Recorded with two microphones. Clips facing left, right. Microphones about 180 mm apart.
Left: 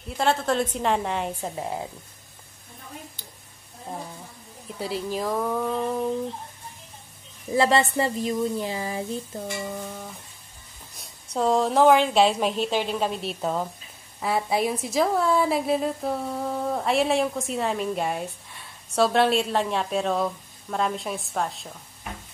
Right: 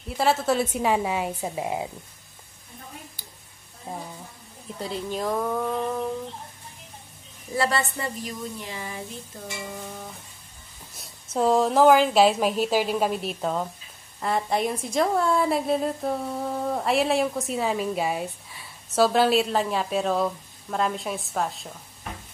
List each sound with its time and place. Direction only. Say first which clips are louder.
0.2 s speech: right 1 dB; 5° right (ahead or behind)
3.2 s a sound: left 1 dB; 10° right (ahead or behind)
4.7 s a woman's voice: left 1 dB; 5° left (ahead or behind)
7.5 s speech: left 5 dB; 25° left (ahead or behind)
11.0 s a woman's voice: right 1 dB; centre (ahead or behind)